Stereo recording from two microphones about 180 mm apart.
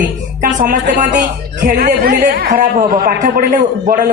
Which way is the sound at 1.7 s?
60° right (ahead or behind).